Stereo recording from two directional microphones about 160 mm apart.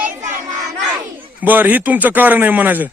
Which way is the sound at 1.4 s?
10° right (ahead or behind).